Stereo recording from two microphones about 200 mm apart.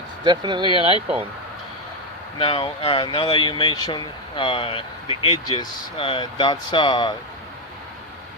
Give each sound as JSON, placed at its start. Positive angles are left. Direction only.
{"t": 0.3, "sound": "speech", "side_deg": -25}
{"t": 2.4, "sound": "speech", "side_deg": 30}